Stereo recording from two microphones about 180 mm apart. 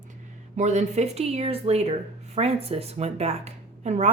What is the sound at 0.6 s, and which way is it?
Speech, 40° right (ahead or behind).